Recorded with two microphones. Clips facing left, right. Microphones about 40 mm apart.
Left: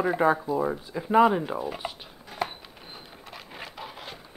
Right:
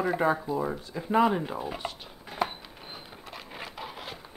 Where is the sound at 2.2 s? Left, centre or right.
Centre.